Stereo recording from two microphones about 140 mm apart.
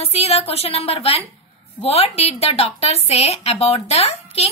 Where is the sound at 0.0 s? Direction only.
50° left (ahead or behind).